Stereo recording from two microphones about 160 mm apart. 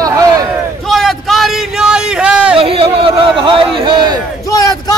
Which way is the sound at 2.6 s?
35° right (ahead or behind).